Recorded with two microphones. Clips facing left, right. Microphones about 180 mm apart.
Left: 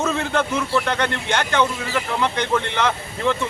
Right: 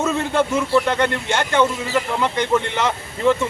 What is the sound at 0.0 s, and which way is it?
A man's voice, 10° right (ahead or behind).